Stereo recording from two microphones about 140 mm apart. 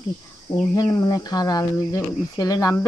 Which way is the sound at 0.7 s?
25° left (ahead or behind).